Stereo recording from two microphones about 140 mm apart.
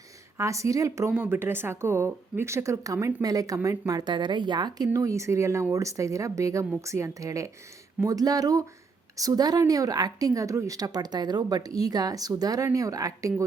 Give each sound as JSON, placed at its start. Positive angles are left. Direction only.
{"t": 0.3, "sound": "a woman's voice", "side_deg": -20}